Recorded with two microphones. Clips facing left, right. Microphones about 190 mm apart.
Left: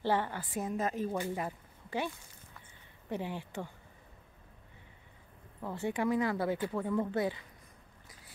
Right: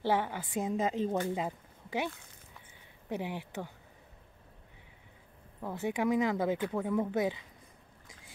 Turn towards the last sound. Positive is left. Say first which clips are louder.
# right 1 dB
turn(degrees=-15)  # may be behind; listen again after turning